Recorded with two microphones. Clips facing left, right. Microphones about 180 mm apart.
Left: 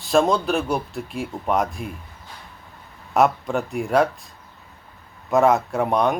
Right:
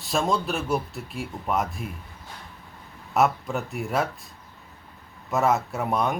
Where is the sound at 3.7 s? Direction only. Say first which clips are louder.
Left 8 dB; 5° right (ahead or behind).